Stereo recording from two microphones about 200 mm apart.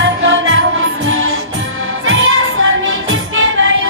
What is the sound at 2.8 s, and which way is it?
Music, 75° right (ahead or behind).